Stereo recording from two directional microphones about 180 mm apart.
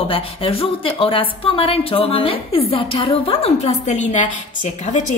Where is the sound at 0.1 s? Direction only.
30° left (ahead or behind).